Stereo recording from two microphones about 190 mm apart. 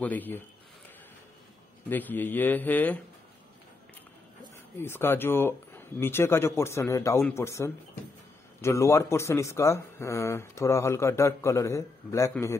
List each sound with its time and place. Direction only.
0.0 s speech: 10° left (ahead or behind)
1.9 s speech: 10° left (ahead or behind)
4.7 s speech: 10° left (ahead or behind)